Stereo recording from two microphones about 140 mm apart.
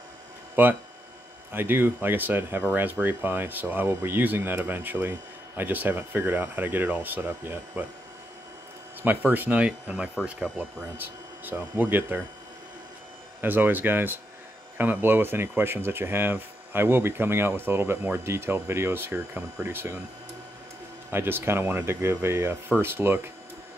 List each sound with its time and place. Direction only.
0.6 s speech: 15° right (ahead or behind)
9.0 s speech: 15° right (ahead or behind)
13.4 s speech: 15° right (ahead or behind)
21.1 s speech: 15° right (ahead or behind)